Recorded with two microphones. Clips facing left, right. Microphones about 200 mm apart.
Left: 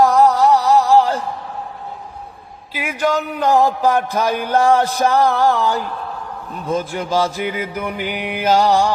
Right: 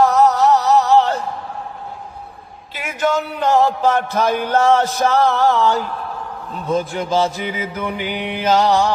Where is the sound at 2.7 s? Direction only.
15° left (ahead or behind).